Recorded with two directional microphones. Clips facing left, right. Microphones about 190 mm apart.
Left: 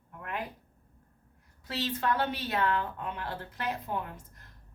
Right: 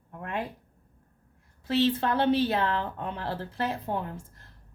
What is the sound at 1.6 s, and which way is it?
A woman's voice, 30° right (ahead or behind).